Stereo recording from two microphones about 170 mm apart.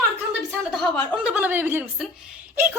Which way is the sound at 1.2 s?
10° right (ahead or behind).